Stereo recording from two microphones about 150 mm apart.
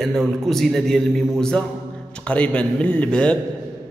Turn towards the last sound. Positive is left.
turn(degrees=5)  # may be behind; listen again after turning